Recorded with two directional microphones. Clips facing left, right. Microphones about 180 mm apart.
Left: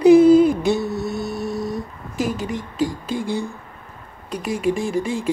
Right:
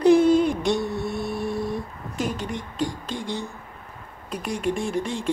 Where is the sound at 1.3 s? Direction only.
30° right (ahead or behind).